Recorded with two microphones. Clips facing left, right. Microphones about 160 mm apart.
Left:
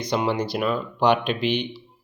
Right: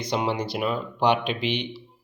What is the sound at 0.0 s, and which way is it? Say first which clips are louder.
Speech: left 2 dB; 25° right (ahead or behind).